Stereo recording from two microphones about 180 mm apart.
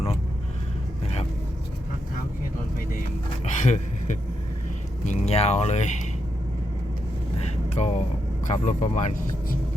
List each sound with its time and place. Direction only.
3.6 s a sound: 40° left (ahead or behind)
5.0 s speech: 35° left (ahead or behind)
7.4 s vehicle: 40° left (ahead or behind)
8.4 s speech: 45° left (ahead or behind)